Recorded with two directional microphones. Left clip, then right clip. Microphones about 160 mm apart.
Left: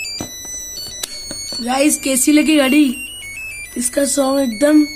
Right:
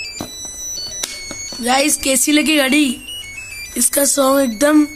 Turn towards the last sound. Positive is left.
turn(degrees=5)  # may be behind; listen again after turning